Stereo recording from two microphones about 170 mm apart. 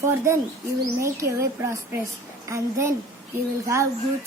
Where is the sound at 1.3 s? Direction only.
15° right (ahead or behind).